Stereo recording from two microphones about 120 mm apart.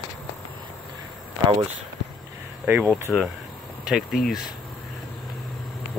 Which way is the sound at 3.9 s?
5° right (ahead or behind).